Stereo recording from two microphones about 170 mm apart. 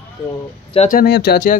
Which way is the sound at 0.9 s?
65° left (ahead or behind).